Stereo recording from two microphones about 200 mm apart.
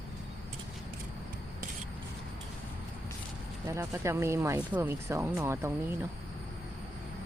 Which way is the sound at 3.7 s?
15° right (ahead or behind).